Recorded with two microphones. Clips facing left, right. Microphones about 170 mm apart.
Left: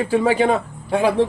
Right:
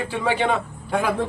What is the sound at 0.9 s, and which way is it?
Speech, 30° left (ahead or behind).